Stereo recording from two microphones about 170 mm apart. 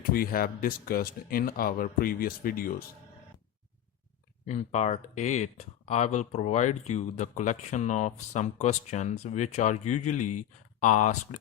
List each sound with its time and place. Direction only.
0.0 s speech: 60° left (ahead or behind)
4.4 s speech: 45° left (ahead or behind)